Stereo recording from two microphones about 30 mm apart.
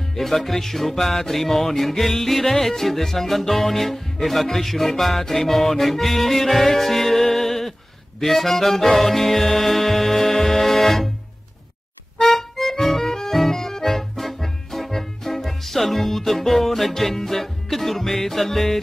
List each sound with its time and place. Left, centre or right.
0.1 s music: centre
5.2 s music: centre
5.5 s music: centre
8.2 s accordion: centre
8.9 s music: centre
12.2 s accordion: centre
13.4 s music: centre